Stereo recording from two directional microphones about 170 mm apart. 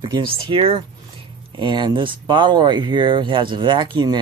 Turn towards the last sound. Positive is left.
turn(degrees=-25)  # may be behind; listen again after turning